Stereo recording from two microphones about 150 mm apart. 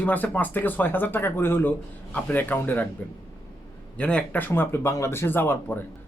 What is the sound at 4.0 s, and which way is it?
A man's voice, 10° left (ahead or behind).